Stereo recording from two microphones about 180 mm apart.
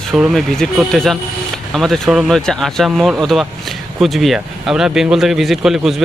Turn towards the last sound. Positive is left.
turn(degrees=0)  # may be behind; listen again after turning